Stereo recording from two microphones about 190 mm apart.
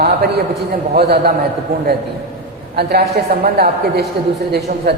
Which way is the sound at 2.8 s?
60° right (ahead or behind).